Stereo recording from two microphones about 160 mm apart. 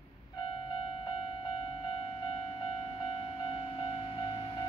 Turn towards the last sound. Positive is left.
turn(degrees=30)  # may be behind; listen again after turning